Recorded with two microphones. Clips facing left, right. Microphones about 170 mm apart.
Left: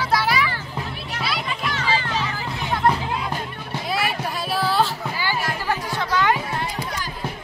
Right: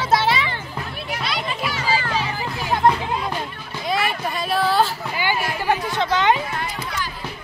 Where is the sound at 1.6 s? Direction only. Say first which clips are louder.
Right 1 dB; 10° right (ahead or behind).